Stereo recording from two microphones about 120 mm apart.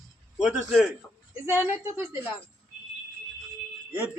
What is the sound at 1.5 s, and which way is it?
Speech, 20° right (ahead or behind).